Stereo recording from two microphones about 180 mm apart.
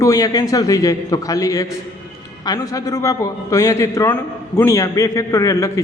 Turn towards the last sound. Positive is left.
turn(degrees=15)  # may be behind; listen again after turning